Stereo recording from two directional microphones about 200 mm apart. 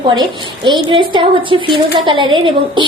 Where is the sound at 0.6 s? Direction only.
25° right (ahead or behind).